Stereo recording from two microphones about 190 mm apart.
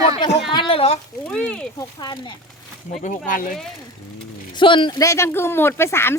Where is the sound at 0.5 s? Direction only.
25° left (ahead or behind).